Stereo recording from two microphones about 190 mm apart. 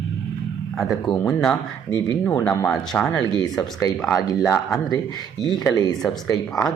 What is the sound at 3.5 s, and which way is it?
Speech, centre (ahead or behind).